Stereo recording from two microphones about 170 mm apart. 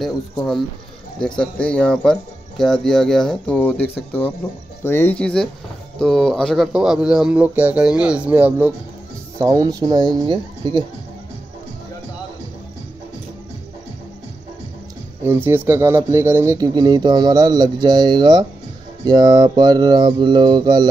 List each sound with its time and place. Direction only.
0.0 s speech: centre (ahead or behind)
9.4 s speech: 20° right (ahead or behind)
15.2 s speech: 15° right (ahead or behind)